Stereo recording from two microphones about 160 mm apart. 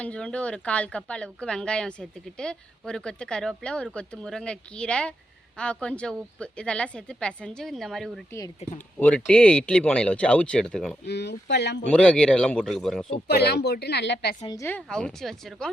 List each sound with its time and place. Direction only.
0.0 s a woman's voice: 5° left (ahead or behind)
11.0 s a woman's voice: 90° left
11.9 s a woman's voice: 5° left (ahead or behind)
13.2 s a woman's voice: 90° left
14.4 s a woman's voice: 25° left (ahead or behind)
14.7 s a woman's voice: 5° left (ahead or behind)